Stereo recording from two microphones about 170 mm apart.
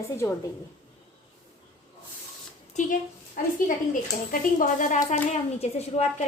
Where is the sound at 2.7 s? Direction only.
50° left (ahead or behind).